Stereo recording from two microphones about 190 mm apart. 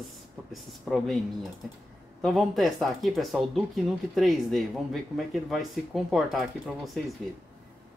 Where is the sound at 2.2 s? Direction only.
Centre (ahead or behind).